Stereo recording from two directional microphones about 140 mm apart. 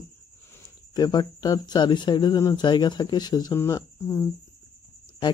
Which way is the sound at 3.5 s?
20° left (ahead or behind).